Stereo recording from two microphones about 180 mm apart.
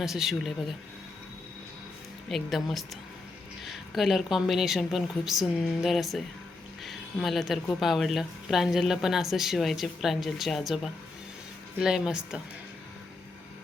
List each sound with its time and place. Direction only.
0.0 s speech: centre (ahead or behind)
2.3 s speech: centre (ahead or behind)
11.8 s speech: 5° right (ahead or behind)